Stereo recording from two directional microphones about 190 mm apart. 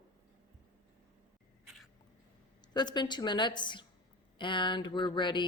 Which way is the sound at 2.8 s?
20° left (ahead or behind).